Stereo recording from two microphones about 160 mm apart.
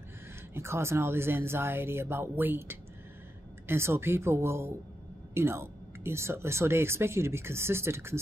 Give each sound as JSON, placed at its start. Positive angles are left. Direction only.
{"t": 0.6, "sound": "speech", "side_deg": -15}